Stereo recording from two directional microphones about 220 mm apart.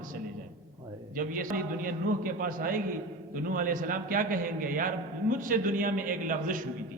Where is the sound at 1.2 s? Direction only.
40° right (ahead or behind).